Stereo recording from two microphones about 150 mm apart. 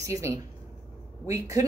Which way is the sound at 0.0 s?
20° right (ahead or behind).